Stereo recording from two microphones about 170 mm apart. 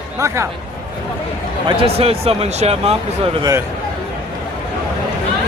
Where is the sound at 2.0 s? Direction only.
35° right (ahead or behind).